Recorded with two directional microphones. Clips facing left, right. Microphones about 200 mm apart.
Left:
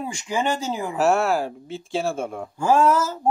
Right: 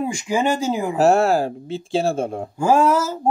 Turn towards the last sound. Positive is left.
turn(degrees=-10)  # may be behind; listen again after turning